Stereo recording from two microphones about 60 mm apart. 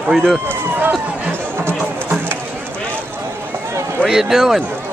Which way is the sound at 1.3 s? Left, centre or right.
Right.